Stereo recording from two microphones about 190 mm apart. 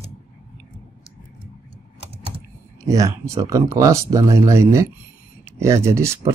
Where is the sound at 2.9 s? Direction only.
15° right (ahead or behind).